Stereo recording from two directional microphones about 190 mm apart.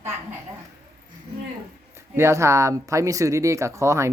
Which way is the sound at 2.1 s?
15° right (ahead or behind).